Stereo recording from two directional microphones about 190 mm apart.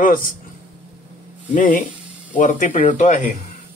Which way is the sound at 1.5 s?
45° left (ahead or behind).